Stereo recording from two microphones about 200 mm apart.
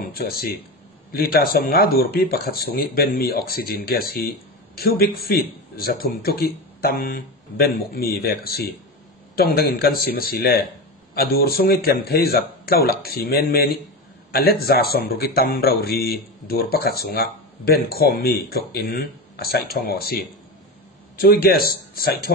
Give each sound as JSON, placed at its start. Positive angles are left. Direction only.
{"t": 0.0, "sound": "speech", "side_deg": 50}